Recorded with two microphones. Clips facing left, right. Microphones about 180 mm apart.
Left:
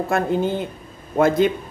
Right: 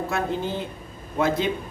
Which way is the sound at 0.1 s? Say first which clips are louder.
Left 8 dB; 50° left (ahead or behind).